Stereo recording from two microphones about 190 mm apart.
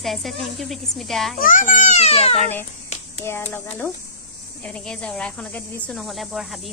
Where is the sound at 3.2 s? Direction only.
10° left (ahead or behind).